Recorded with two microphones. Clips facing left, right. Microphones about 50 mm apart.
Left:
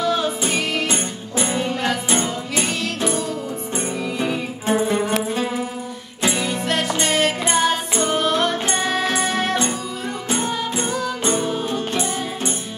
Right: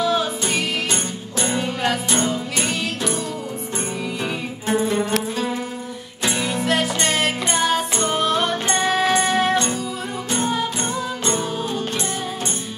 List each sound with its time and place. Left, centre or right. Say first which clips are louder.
0.0 s music: even; centre
3.7 s music: left 2 dB; centre
4.7 s music: even; centre
6.3 s music: right 4 dB; centre
11.3 s music: left 2 dB; centre